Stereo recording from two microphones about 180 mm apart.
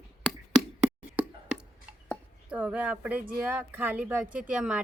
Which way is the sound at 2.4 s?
5° right (ahead or behind).